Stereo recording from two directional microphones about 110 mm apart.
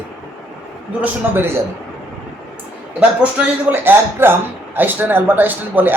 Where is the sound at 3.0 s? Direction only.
15° right (ahead or behind).